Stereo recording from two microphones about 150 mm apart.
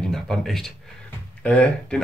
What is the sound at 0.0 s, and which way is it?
Speech, 5° left (ahead or behind).